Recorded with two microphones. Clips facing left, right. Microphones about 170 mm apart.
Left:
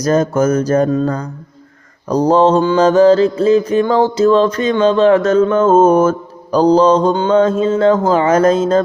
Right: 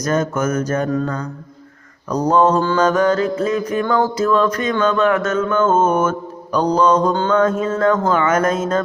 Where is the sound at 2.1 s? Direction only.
30° left (ahead or behind).